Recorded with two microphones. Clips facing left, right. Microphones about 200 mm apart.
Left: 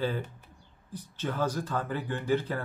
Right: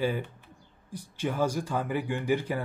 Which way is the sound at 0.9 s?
10° right (ahead or behind).